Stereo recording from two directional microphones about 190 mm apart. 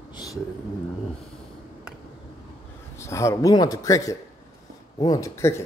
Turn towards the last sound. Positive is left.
turn(degrees=15)  # may be behind; listen again after turning